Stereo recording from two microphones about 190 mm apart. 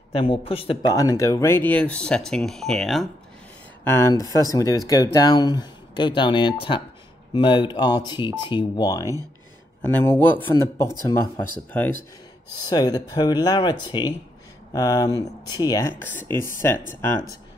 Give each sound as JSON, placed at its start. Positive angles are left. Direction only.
{"t": 0.1, "sound": "speech", "side_deg": 30}
{"t": 0.9, "sound": "speech", "side_deg": 15}
{"t": 3.8, "sound": "speech", "side_deg": 15}
{"t": 12.5, "sound": "speech", "side_deg": 20}